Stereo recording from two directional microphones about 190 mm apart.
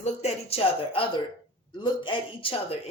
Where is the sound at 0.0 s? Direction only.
30° left (ahead or behind).